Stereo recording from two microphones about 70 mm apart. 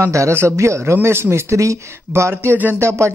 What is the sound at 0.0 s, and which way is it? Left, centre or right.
A man's voice, right.